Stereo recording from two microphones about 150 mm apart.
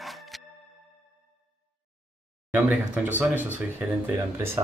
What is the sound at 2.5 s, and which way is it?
Speech, 10° right (ahead or behind).